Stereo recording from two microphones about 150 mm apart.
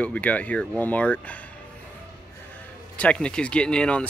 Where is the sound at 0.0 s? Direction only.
10° left (ahead or behind).